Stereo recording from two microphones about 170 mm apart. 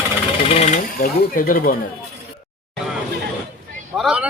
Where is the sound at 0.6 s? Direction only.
45° left (ahead or behind).